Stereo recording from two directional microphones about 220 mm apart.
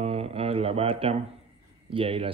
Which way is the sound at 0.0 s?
25° right (ahead or behind).